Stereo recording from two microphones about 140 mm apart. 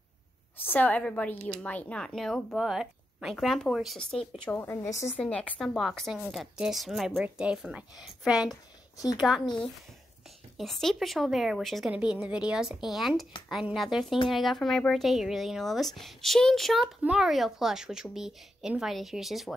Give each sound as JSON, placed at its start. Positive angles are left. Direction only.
{"t": 0.7, "sound": "a woman's voice", "side_deg": 10}
{"t": 4.6, "sound": "a woman's voice", "side_deg": 20}
{"t": 5.2, "sound": "speech", "side_deg": 10}
{"t": 8.5, "sound": "a woman's voice", "side_deg": 25}
{"t": 10.6, "sound": "speech", "side_deg": 0}